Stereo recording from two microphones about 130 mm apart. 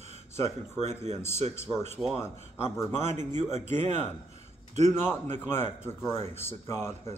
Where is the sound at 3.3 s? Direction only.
60° right (ahead or behind).